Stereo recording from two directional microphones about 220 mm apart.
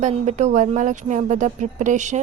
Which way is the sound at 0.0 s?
30° right (ahead or behind).